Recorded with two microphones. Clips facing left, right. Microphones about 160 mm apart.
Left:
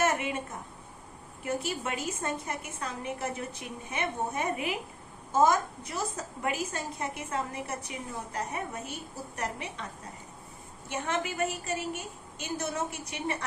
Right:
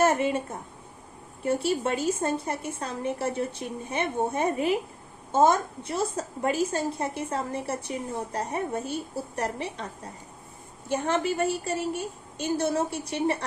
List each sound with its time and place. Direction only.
0.0 s a woman's voice: 30° right (ahead or behind)
1.5 s a woman's voice: 30° right (ahead or behind)
10.8 s a woman's voice: 35° right (ahead or behind)